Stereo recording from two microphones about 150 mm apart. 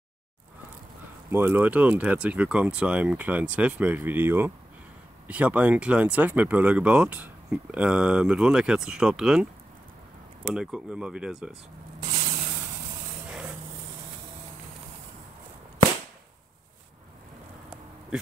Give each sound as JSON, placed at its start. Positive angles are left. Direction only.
{"t": 1.3, "sound": "speech", "side_deg": -15}
{"t": 10.5, "sound": "speech", "side_deg": -5}
{"t": 12.1, "sound": "a sound", "side_deg": -45}